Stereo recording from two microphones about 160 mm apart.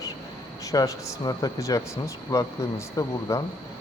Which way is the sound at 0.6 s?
20° left (ahead or behind).